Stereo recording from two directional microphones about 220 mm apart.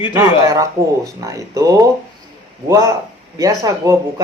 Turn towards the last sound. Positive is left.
turn(degrees=-15)  # may be behind; listen again after turning